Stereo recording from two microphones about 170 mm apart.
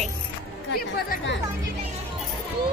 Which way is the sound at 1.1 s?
90° left.